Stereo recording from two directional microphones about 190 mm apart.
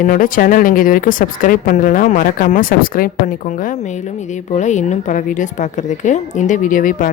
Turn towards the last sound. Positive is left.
turn(degrees=45)  # may be behind; listen again after turning